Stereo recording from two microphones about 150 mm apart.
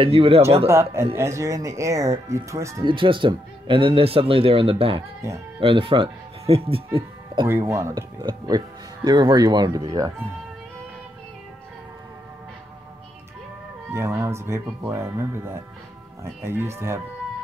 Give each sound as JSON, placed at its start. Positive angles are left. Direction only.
{"t": 0.0, "sound": "speech", "side_deg": -40}
{"t": 0.7, "sound": "speech", "side_deg": -20}
{"t": 2.8, "sound": "speech", "side_deg": -35}
{"t": 5.2, "sound": "speech", "side_deg": -20}
{"t": 5.6, "sound": "speech", "side_deg": -35}
{"t": 7.4, "sound": "speech", "side_deg": -20}
{"t": 13.9, "sound": "speech", "side_deg": -20}